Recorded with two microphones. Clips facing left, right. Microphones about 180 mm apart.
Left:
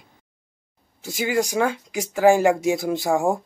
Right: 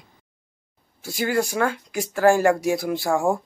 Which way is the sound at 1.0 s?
20° left (ahead or behind).